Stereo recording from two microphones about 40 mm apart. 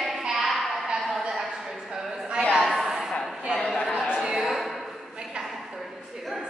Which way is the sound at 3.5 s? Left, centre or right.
Centre.